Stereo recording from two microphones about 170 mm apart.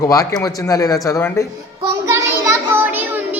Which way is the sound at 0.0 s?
20° left (ahead or behind).